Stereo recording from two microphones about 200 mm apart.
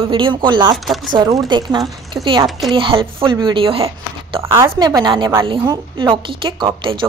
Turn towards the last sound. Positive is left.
turn(degrees=-25)  # may be behind; listen again after turning